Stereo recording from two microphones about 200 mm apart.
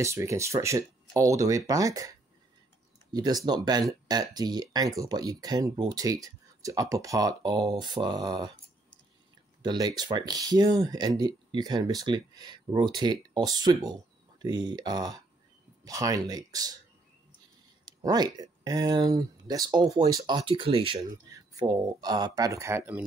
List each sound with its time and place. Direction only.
0.0 s speech: 15° right (ahead or behind)
9.6 s speech: 20° right (ahead or behind)
17.8 s speech: 20° right (ahead or behind)